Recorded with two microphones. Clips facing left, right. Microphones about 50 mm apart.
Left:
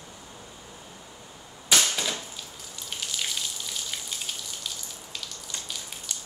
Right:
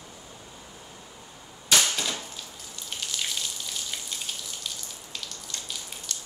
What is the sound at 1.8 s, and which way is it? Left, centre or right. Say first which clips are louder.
Typewriter: even; centre.